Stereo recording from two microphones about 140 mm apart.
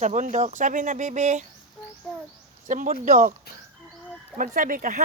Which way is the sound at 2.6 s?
65° right (ahead or behind).